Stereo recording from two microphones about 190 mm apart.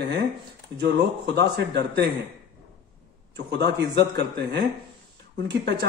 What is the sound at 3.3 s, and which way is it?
Speech, 60° right (ahead or behind).